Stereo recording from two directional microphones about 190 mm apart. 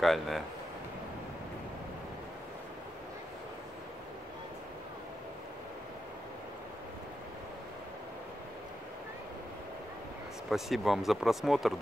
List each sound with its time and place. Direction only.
0.0 s speech: centre (ahead or behind)
10.5 s speech: centre (ahead or behind)